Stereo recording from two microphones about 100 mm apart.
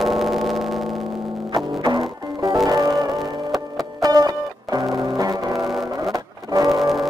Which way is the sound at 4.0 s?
40° right (ahead or behind).